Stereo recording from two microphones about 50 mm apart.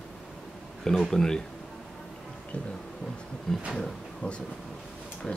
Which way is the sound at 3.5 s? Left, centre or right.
Centre.